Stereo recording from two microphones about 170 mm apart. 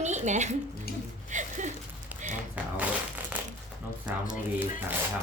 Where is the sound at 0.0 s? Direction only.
45° right (ahead or behind).